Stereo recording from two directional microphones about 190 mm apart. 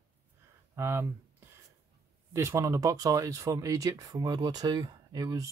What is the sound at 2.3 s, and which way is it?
Speech, 15° right (ahead or behind).